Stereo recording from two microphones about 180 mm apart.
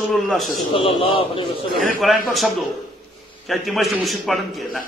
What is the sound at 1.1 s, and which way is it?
Speech, 30° left (ahead or behind).